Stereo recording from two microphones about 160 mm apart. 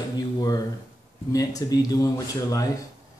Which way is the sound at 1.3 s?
20° left (ahead or behind).